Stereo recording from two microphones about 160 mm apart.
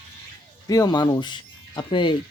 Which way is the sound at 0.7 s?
25° left (ahead or behind).